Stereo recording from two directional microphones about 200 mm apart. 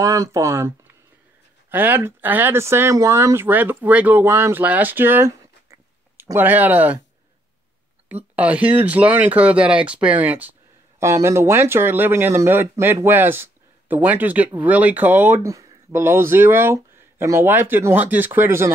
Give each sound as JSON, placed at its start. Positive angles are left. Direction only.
{"t": 0.0, "sound": "speech", "side_deg": -15}
{"t": 8.1, "sound": "speech", "side_deg": -10}